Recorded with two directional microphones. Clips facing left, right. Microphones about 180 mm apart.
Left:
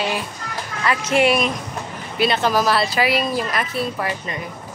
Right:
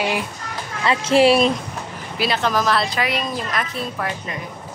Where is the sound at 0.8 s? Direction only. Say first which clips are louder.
Right 3 dB; 25° right (ahead or behind).